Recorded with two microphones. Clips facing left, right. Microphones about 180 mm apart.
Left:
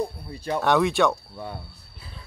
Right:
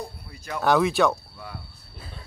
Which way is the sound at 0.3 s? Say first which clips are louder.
Left 7 dB; 30° left (ahead or behind).